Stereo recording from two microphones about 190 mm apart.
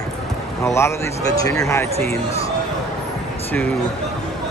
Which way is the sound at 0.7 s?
15° left (ahead or behind).